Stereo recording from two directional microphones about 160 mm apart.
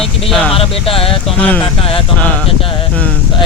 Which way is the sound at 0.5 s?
35° left (ahead or behind).